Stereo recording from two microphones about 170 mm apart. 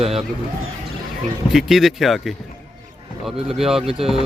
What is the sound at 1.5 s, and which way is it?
Speech, centre (ahead or behind).